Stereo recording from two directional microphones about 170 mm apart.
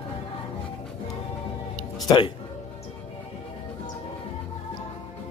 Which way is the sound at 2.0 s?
30° left (ahead or behind).